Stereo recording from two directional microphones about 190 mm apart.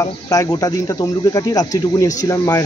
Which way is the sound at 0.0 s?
20° left (ahead or behind).